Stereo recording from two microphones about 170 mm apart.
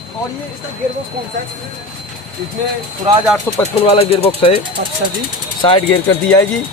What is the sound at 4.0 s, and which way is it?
Speech, 35° left (ahead or behind).